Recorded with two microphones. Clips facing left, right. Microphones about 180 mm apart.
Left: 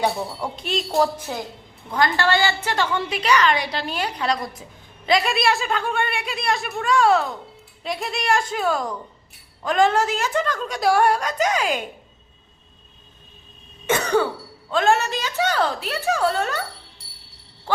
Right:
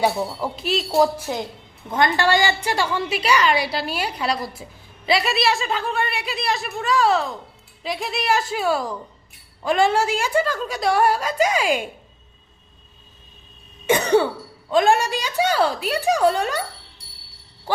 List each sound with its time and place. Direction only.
0.0 s a woman's voice: 5° right (ahead or behind)
13.8 s throat clearing: 15° right (ahead or behind)
14.7 s a woman's voice: 15° right (ahead or behind)